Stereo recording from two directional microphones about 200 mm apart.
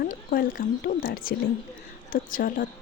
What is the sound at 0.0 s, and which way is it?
Speech, 50° left (ahead or behind).